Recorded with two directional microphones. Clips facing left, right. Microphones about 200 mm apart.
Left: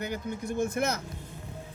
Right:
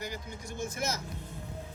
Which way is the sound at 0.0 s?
60° left (ahead or behind).